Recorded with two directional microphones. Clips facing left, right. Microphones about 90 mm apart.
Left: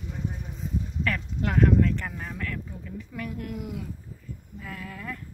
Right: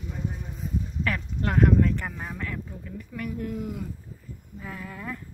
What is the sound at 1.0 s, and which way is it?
Speech, 5° right (ahead or behind).